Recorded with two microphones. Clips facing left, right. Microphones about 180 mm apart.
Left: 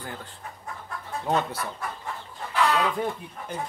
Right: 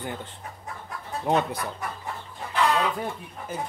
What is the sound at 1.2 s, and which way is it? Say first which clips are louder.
Speech: right 2 dB; 15° right (ahead or behind).